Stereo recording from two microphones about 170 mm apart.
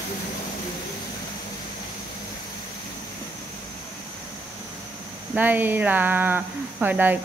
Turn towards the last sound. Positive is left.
turn(degrees=-10)  # may be behind; listen again after turning